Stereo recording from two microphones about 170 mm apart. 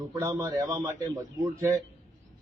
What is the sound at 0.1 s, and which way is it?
A man's voice, 20° right (ahead or behind).